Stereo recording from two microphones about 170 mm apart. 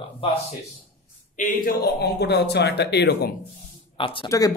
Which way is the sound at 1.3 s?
55° left (ahead or behind).